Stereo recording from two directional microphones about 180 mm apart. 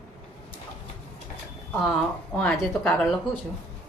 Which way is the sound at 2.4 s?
5° left (ahead or behind).